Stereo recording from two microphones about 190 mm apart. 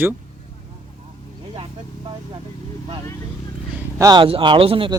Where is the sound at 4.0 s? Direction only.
25° right (ahead or behind).